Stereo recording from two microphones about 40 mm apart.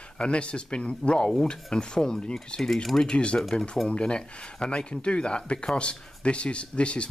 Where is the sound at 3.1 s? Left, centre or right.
Left.